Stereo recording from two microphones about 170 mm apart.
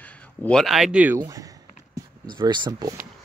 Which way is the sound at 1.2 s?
20° right (ahead or behind).